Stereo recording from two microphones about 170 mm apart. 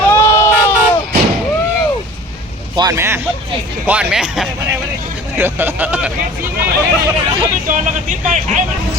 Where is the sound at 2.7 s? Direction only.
20° right (ahead or behind).